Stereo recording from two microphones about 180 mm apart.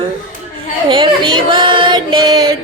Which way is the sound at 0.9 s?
25° right (ahead or behind).